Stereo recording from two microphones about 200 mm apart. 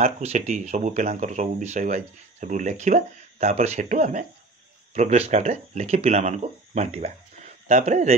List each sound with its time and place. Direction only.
0.0 s speech: 35° right (ahead or behind)